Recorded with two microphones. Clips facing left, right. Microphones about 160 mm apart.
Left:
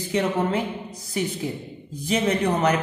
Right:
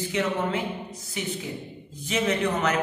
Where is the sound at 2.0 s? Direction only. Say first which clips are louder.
Left 3 dB; 35° left (ahead or behind).